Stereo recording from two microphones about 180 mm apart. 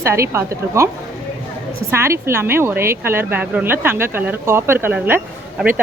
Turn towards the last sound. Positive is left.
turn(degrees=-5)  # may be behind; listen again after turning